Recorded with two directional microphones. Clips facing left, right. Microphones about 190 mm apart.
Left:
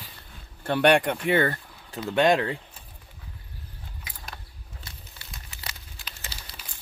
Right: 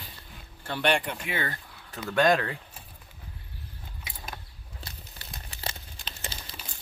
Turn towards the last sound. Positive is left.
turn(degrees=-25)  # may be behind; listen again after turning